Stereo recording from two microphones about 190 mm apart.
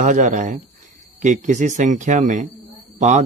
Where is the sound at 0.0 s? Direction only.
40° right (ahead or behind).